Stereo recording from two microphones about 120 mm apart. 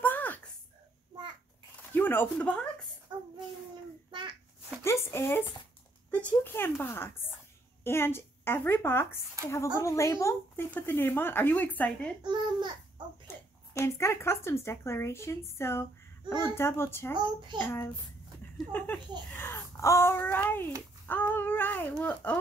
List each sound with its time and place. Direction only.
0.0 s a sound: 15° left (ahead or behind)
2.0 s speech: 15° left (ahead or behind)
4.1 s a sound: 40° right (ahead or behind)
4.8 s a woman's voice: 20° left (ahead or behind)
12.2 s a child's voice: 35° right (ahead or behind)
13.7 s speech: 25° left (ahead or behind)
17.1 s a child's voice: 40° right (ahead or behind)
18.7 s a woman's voice: 15° left (ahead or behind)